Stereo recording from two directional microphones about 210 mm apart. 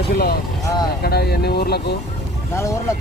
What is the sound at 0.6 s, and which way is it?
Speech, 20° left (ahead or behind).